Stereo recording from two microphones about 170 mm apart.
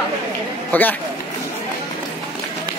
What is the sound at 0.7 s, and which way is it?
Speech, 10° left (ahead or behind).